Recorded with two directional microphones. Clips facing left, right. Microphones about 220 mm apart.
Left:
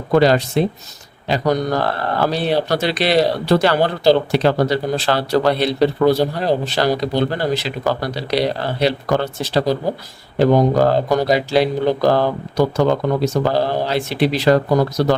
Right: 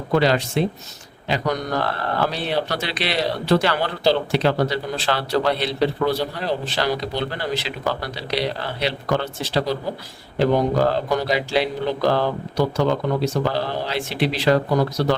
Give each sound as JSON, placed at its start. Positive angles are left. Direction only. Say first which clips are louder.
{"t": 0.1, "sound": "speech", "louder": "left 5 dB", "side_deg": 40}